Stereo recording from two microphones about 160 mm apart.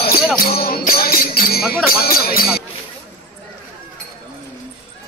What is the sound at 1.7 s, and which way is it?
Speech, 70° left (ahead or behind).